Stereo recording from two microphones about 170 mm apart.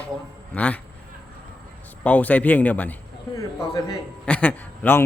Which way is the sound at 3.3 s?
20° left (ahead or behind).